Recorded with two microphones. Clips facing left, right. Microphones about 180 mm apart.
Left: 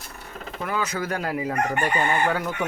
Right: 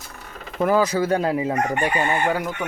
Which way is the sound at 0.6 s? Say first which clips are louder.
Right 9 dB; 35° right (ahead or behind).